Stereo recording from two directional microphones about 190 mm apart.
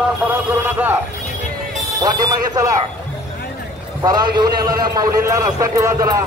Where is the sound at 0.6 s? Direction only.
10° right (ahead or behind).